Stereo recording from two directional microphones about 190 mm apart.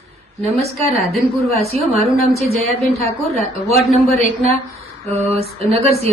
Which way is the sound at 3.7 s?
Centre (ahead or behind).